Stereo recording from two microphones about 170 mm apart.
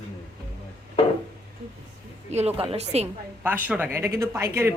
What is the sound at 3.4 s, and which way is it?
Speech, 10° right (ahead or behind).